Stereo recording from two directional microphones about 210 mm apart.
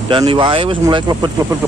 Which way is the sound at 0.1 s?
25° right (ahead or behind).